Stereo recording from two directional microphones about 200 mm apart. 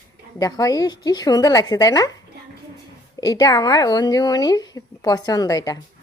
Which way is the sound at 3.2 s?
20° left (ahead or behind).